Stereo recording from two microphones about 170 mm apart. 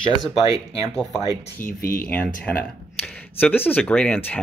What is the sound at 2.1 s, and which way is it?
Speech, 10° left (ahead or behind).